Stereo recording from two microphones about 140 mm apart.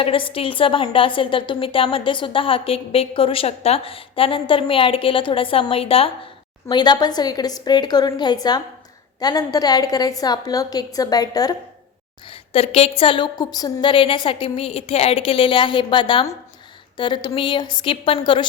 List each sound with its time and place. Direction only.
0.0 s a woman's voice: 40° left (ahead or behind)
6.7 s a woman's voice: 30° left (ahead or behind)
12.3 s a woman's voice: 45° left (ahead or behind); by 13.9 s 30° left (ahead or behind)
13.9 s a woman's voice: 40° left (ahead or behind)